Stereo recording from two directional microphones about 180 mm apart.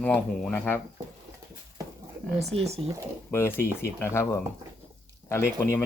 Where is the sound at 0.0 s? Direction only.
10° left (ahead or behind).